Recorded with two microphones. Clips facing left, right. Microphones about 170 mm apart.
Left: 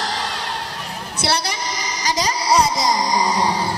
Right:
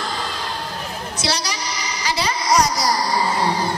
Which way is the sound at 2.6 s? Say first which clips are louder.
Left 1 dB; 20° left (ahead or behind).